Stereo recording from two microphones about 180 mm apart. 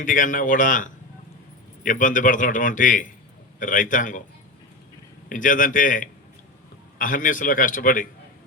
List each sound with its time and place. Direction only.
0.0 s a man's voice: 50° left (ahead or behind)
5.3 s a man's voice: 50° left (ahead or behind)